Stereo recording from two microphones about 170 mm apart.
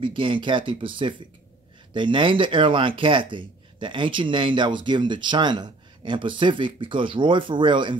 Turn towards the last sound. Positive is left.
turn(degrees=-25)  # may be behind; listen again after turning